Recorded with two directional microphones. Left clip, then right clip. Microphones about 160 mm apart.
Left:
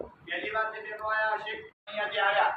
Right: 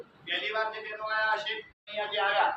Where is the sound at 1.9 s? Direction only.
15° right (ahead or behind).